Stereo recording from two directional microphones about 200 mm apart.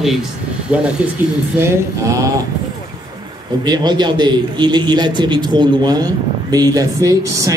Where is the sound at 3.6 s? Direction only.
20° right (ahead or behind).